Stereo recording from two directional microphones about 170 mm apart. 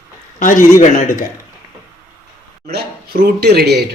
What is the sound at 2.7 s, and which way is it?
Speech, 65° right (ahead or behind).